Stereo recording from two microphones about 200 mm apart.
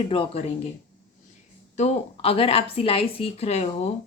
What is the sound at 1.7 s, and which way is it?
A woman's voice, 30° left (ahead or behind).